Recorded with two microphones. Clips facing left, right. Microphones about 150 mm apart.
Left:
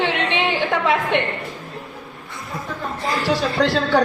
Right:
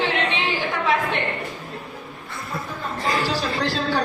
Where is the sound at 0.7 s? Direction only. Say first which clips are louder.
Left 3 dB; 65° left (ahead or behind).